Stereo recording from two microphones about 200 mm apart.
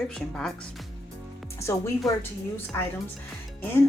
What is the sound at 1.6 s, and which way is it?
Speech, 15° left (ahead or behind).